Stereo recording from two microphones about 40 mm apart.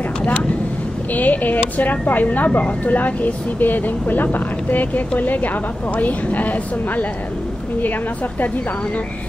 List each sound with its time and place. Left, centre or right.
1.1 s speech: left